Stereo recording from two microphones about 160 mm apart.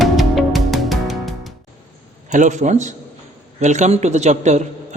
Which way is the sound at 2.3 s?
50° right (ahead or behind).